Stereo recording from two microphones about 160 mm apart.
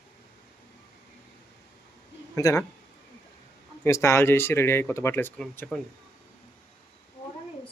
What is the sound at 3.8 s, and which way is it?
Speech, 15° left (ahead or behind).